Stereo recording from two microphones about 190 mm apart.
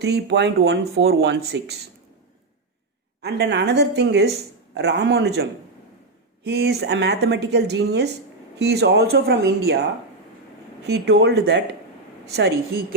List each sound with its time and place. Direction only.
0.0 s speech: 60° right (ahead or behind)
3.2 s speech: 60° right (ahead or behind)
10.8 s speech: 60° right (ahead or behind)